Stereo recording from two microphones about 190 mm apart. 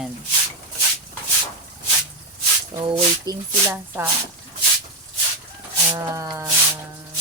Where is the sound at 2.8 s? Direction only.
20° right (ahead or behind).